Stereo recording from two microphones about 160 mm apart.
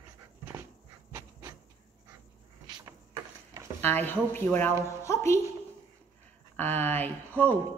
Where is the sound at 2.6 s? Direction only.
25° right (ahead or behind).